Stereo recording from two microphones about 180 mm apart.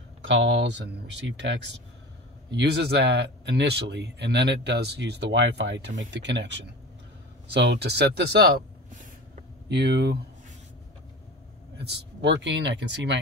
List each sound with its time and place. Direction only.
0.3 s speech: 85° right
2.5 s speech: 70° right (ahead or behind)
7.6 s a sound: 70° right (ahead or behind); by 9.4 s 50° right (ahead or behind)
9.7 s speech: 70° right (ahead or behind)
12.2 s speech: 85° right